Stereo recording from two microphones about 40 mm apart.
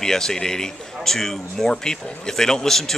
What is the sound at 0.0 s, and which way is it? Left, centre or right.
Speech, centre.